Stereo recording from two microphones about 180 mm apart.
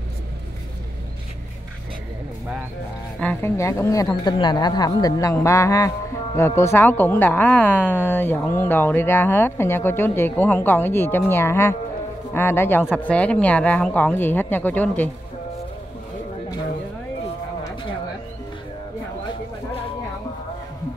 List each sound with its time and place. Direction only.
3.2 s speech: 10° left (ahead or behind)